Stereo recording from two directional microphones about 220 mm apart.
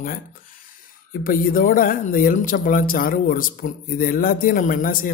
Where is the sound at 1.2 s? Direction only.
40° left (ahead or behind).